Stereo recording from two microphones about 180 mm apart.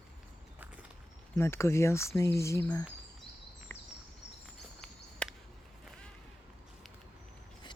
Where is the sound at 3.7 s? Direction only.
10° left (ahead or behind).